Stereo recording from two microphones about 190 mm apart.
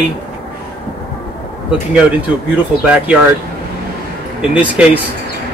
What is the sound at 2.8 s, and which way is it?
Speech, 5° right (ahead or behind).